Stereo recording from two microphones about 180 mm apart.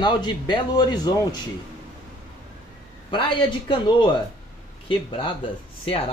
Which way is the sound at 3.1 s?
25° left (ahead or behind).